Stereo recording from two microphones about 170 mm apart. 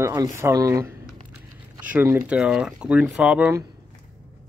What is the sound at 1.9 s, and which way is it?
Speech, 15° right (ahead or behind).